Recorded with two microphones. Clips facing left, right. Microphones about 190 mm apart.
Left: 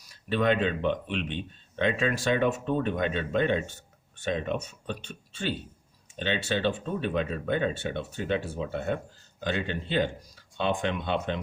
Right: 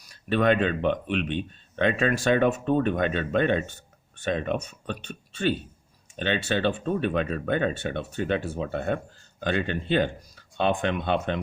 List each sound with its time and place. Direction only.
0.1 s speech: 60° right (ahead or behind)